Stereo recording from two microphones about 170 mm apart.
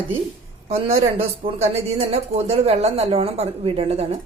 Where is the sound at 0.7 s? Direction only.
35° right (ahead or behind).